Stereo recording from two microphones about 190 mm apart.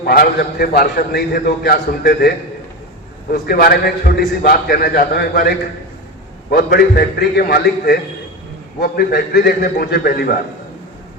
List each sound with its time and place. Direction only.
0.0 s a man's voice: 50° left (ahead or behind)